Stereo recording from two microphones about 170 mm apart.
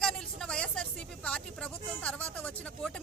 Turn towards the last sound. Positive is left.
turn(degrees=5)  # may be behind; listen again after turning